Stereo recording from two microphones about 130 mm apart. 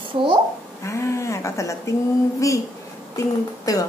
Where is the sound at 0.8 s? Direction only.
20° left (ahead or behind).